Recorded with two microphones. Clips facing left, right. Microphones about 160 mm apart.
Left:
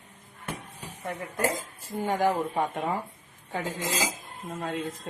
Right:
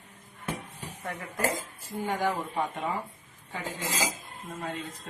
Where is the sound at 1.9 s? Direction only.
45° left (ahead or behind).